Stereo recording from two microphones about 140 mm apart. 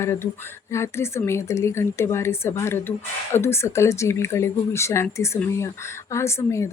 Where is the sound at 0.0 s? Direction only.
15° left (ahead or behind).